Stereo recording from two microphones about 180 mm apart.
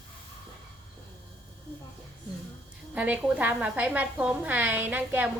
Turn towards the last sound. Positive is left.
turn(degrees=-10)  # may be behind; listen again after turning